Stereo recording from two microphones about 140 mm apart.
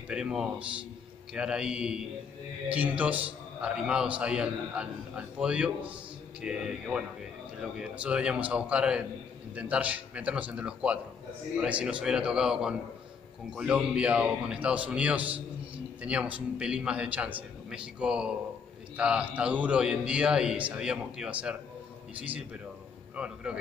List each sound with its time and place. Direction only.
0.1 s a man's voice: 5° right (ahead or behind)